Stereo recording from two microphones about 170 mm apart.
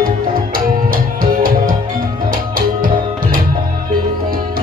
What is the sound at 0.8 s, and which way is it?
Music, 55° right (ahead or behind).